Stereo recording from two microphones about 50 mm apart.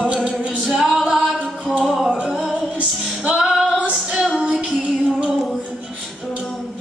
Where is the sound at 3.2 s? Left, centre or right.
Centre.